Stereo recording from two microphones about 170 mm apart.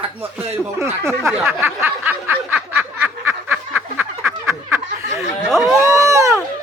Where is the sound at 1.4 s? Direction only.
15° right (ahead or behind).